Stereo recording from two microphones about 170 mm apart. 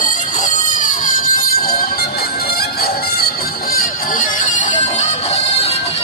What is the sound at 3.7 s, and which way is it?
Music, 55° left (ahead or behind).